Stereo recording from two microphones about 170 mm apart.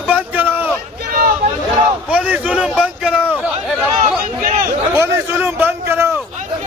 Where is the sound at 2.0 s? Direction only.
10° right (ahead or behind).